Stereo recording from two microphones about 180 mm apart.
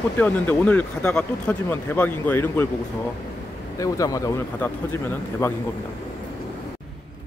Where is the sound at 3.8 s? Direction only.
20° left (ahead or behind).